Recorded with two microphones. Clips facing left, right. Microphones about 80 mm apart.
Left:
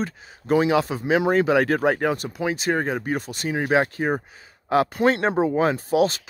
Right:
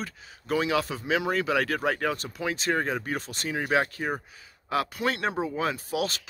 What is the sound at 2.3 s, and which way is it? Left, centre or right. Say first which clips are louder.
Speech: left 5 dB; centre.